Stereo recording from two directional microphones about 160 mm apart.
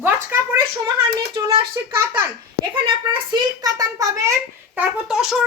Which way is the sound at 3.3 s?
25° right (ahead or behind).